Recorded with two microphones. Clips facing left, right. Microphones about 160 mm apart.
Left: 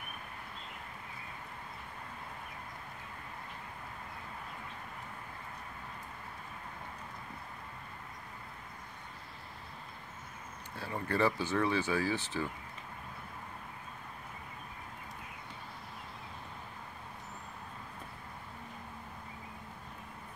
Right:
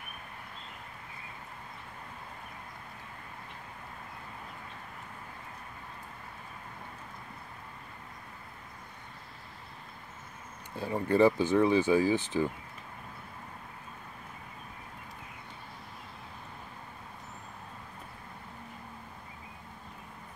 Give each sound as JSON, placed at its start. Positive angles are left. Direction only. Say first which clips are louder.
{"t": 10.8, "sound": "speech", "louder": "right 7 dB", "side_deg": -15}